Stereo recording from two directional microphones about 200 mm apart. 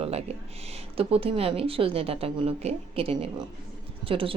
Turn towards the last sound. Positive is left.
turn(degrees=-25)  # may be behind; listen again after turning